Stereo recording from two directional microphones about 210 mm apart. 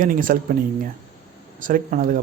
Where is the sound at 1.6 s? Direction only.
40° right (ahead or behind).